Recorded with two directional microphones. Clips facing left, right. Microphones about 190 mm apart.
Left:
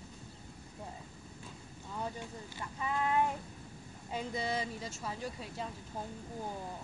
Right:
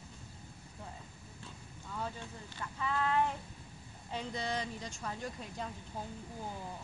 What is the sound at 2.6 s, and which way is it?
Speech, 15° left (ahead or behind).